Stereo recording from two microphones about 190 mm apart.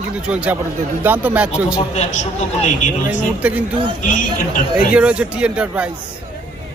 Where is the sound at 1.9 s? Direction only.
35° left (ahead or behind).